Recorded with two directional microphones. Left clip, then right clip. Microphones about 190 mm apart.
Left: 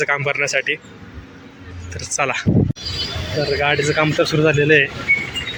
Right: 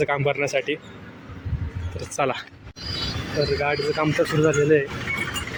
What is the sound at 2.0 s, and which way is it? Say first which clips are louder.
Speech: left 4 dB; 10° right (ahead or behind).